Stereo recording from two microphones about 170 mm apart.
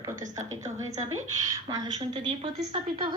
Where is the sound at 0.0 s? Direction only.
20° right (ahead or behind).